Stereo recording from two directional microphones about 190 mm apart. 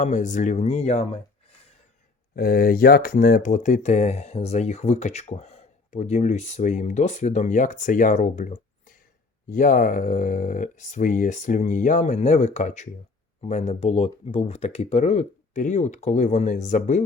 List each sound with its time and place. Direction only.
0.0 s speech: 40° left (ahead or behind)
2.3 s speech: 50° left (ahead or behind)